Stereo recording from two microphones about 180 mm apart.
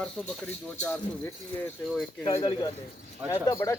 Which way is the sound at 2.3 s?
20° left (ahead or behind).